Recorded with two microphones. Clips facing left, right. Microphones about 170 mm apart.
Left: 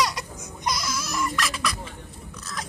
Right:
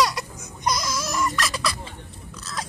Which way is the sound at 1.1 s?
40° right (ahead or behind).